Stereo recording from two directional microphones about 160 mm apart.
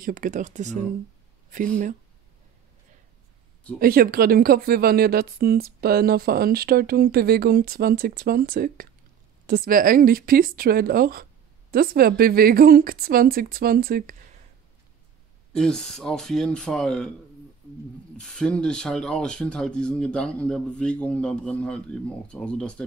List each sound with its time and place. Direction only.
0.0 s speech: 60° right (ahead or behind)
3.8 s speech: 70° right (ahead or behind)
15.5 s speech: 5° left (ahead or behind)
18.1 s speech: 5° left (ahead or behind)